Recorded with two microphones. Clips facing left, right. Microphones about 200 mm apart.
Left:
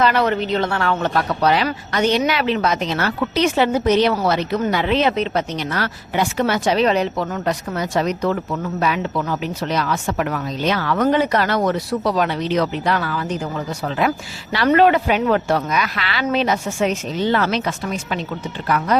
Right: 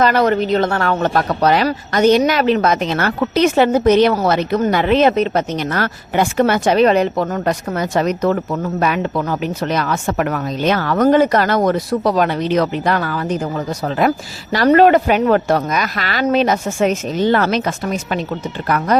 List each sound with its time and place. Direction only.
0.0 s speech: 40° right (ahead or behind)